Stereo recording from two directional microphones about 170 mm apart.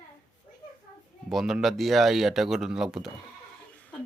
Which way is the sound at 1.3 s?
Centre (ahead or behind).